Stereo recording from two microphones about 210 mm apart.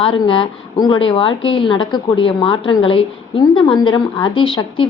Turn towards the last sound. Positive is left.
turn(degrees=25)  # may be behind; listen again after turning